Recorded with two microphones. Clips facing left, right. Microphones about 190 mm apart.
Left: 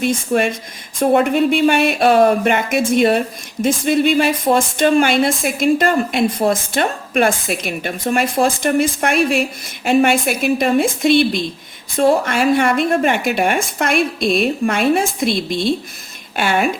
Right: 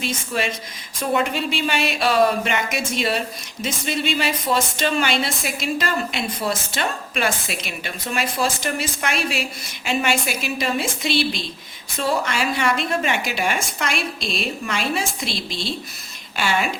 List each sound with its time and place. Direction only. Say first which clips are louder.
0.0 s speech: left 8 dB; 50° left (ahead or behind)